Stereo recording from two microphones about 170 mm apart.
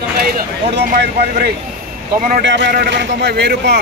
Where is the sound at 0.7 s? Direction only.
80° right.